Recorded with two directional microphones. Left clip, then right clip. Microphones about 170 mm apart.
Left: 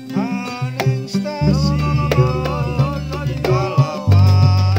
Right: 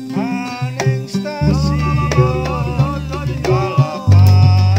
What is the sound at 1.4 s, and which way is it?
Music, 15° left (ahead or behind).